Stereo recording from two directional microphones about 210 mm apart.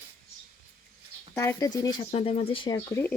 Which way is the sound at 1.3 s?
15° left (ahead or behind).